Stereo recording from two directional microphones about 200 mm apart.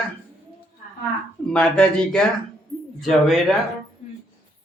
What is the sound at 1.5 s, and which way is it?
Speech, 5° left (ahead or behind).